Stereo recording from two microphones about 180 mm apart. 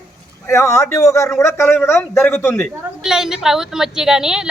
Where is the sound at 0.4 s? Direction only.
15° left (ahead or behind).